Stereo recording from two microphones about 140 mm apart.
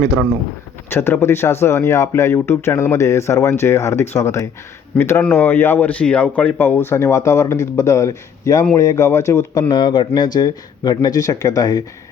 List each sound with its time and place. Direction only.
0.9 s speech: 15° left (ahead or behind)
9.6 s speech: 35° left (ahead or behind)